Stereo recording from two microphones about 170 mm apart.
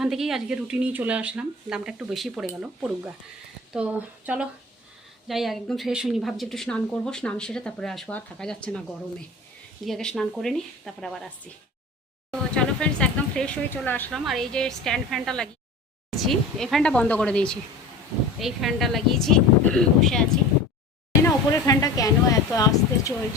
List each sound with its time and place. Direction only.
0.0 s speech: centre (ahead or behind)
9.8 s speech: 5° left (ahead or behind)
21.2 s speech: 20° left (ahead or behind)